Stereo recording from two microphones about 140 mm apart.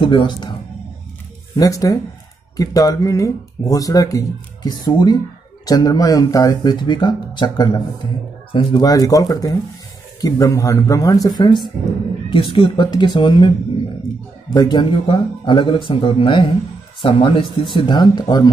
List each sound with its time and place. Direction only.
0.0 s speech: 35° left (ahead or behind)
1.6 s speech: 25° left (ahead or behind)
14.5 s speech: 30° left (ahead or behind)